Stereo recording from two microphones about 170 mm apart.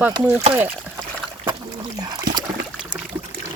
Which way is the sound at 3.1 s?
10° right (ahead or behind).